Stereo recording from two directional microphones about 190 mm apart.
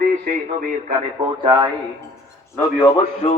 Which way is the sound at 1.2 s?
25° right (ahead or behind).